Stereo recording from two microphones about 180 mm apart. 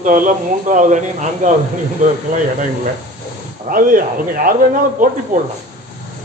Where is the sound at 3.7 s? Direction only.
50° right (ahead or behind).